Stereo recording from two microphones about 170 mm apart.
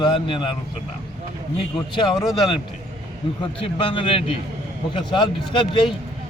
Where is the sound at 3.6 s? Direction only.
30° left (ahead or behind).